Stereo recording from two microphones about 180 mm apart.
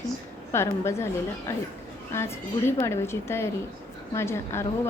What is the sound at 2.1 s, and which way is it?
A woman's voice, 15° left (ahead or behind).